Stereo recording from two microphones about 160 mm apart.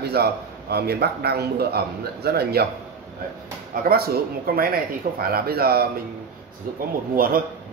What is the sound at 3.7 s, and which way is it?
A man's voice, 65° right (ahead or behind).